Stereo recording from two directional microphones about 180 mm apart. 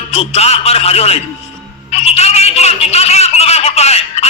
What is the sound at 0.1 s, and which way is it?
A man's voice, 35° left (ahead or behind).